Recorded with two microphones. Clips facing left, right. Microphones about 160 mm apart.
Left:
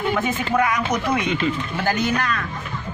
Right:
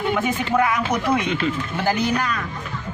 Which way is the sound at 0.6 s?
5° right (ahead or behind).